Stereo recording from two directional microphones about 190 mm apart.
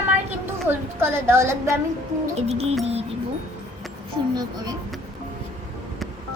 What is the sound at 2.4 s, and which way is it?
Music, 35° right (ahead or behind).